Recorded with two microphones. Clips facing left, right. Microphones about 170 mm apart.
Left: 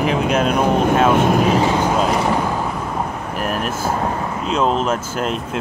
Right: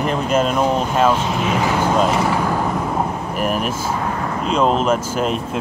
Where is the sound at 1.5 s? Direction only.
25° left (ahead or behind).